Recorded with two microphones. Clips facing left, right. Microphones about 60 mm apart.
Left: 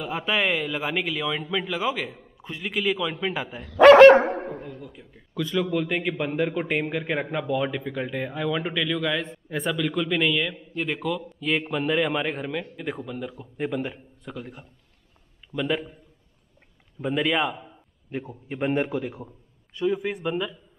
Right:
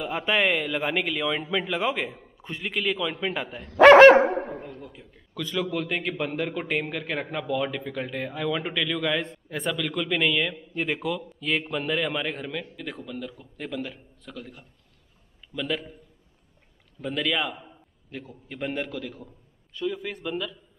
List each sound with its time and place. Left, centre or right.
0.0 s a man's voice: centre
17.0 s a man's voice: centre
18.6 s a man's voice: left